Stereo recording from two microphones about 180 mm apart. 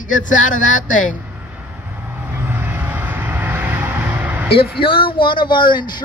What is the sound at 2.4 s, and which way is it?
Vehicle, 10° right (ahead or behind).